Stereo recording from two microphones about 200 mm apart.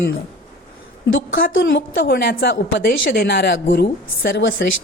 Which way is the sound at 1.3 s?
45° left (ahead or behind).